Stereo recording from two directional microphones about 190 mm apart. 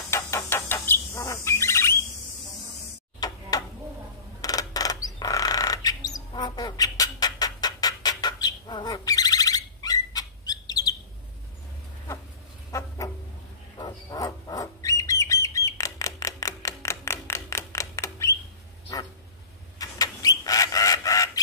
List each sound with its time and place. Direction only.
0.1 s bird: 15° left (ahead or behind)
3.2 s tick-tock: 20° left (ahead or behind)
4.4 s bird: 20° left (ahead or behind)
12.7 s a sound: 15° left (ahead or behind)
13.7 s bird: 20° left (ahead or behind)
19.8 s bird: 20° left (ahead or behind)